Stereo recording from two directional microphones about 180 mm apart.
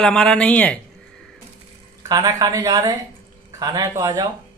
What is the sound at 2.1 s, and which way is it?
A woman's voice, 20° right (ahead or behind).